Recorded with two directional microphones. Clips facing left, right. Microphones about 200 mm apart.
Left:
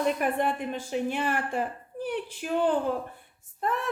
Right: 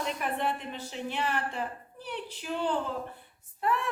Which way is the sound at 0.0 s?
50° left (ahead or behind).